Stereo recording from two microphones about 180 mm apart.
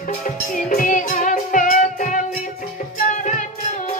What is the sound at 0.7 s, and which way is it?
Music, 45° left (ahead or behind).